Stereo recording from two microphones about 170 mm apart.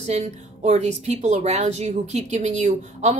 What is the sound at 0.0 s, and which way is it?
Speech, 40° right (ahead or behind).